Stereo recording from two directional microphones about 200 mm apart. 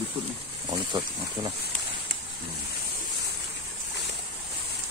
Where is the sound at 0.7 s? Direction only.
25° right (ahead or behind).